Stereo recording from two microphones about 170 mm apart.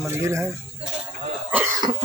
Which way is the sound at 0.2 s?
15° right (ahead or behind).